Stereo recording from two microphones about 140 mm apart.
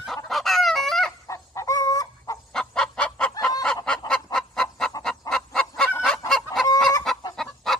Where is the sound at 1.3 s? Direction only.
25° left (ahead or behind).